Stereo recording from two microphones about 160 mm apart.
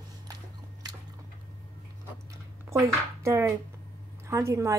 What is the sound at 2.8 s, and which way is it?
A woman's voice, 20° right (ahead or behind).